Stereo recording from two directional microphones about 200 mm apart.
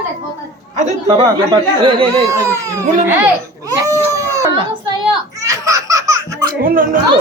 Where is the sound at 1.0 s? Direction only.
20° right (ahead or behind).